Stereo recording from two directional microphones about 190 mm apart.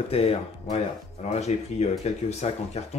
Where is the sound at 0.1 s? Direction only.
30° left (ahead or behind).